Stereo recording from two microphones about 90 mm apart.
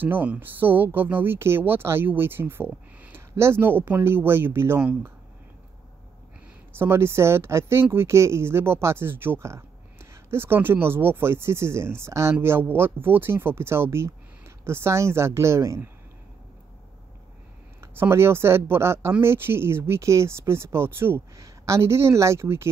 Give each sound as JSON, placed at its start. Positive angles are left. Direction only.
{"t": 0.0, "sound": "speech", "side_deg": -20}
{"t": 6.7, "sound": "speech", "side_deg": -25}
{"t": 17.7, "sound": "speech", "side_deg": -25}